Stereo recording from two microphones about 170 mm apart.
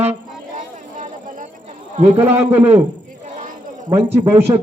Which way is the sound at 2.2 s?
10° right (ahead or behind).